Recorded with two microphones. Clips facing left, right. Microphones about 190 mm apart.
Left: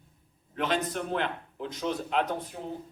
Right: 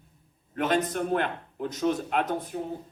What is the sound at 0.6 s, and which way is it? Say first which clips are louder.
A man's voice: right 4 dB; 50° right (ahead or behind).